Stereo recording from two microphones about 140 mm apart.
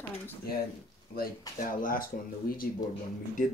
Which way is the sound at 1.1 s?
90° left.